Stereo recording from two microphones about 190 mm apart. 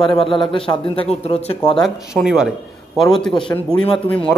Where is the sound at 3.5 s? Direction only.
15° left (ahead or behind).